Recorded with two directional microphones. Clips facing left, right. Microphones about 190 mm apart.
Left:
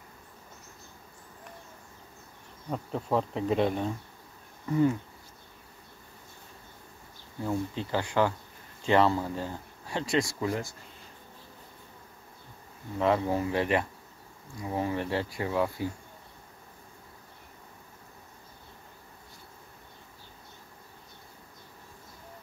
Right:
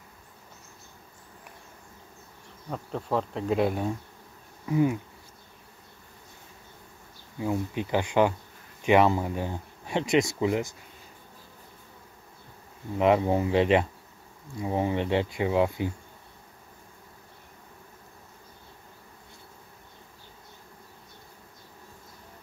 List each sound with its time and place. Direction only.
2.7 s insect: centre (ahead or behind)
4.6 s speech: 10° right (ahead or behind)
7.3 s speech: 15° right (ahead or behind)
12.9 s speech: 20° right (ahead or behind)